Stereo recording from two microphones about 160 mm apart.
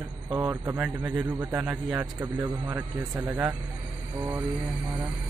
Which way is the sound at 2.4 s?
25° right (ahead or behind).